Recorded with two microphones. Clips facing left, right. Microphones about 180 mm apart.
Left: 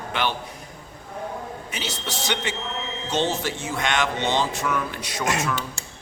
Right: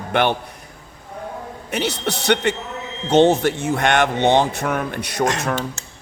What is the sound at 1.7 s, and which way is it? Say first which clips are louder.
Speech: right 13 dB; 60° right (ahead or behind).